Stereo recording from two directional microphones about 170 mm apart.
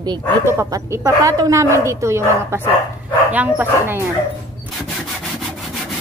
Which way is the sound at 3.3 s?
10° right (ahead or behind).